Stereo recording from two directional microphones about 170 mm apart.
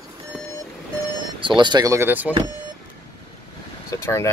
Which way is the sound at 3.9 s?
15° left (ahead or behind).